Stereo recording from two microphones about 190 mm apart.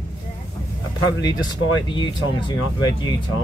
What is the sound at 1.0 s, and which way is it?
Speech, 20° left (ahead or behind).